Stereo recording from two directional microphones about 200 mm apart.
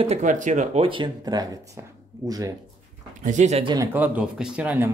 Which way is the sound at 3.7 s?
15° right (ahead or behind).